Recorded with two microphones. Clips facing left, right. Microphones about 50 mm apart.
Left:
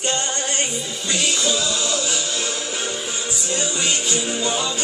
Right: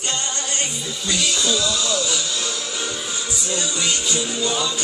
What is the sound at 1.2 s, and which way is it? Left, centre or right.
Music, left.